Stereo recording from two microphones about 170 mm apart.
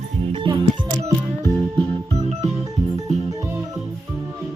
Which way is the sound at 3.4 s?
15° right (ahead or behind).